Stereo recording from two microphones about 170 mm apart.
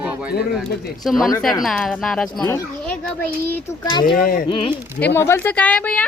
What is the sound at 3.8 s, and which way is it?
Speech, 25° left (ahead or behind).